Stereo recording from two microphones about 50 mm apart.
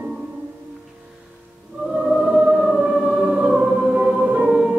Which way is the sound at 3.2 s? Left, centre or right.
Right.